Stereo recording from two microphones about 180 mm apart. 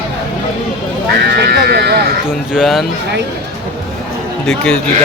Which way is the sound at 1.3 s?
65° right (ahead or behind).